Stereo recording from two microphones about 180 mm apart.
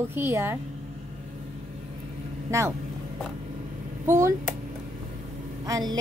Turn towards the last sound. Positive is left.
turn(degrees=-20)  # may be behind; listen again after turning